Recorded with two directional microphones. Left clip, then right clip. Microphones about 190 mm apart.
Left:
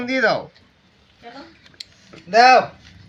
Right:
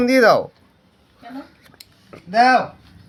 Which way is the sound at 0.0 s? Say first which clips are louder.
Right 6 dB; 55° right (ahead or behind).